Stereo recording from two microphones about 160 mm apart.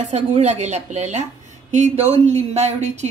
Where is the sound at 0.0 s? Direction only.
45° right (ahead or behind).